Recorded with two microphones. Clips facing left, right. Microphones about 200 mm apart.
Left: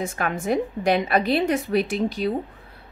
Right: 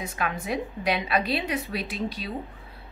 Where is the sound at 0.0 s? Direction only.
45° left (ahead or behind).